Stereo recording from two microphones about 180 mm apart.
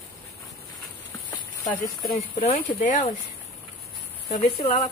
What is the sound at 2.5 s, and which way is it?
Speech, 45° left (ahead or behind).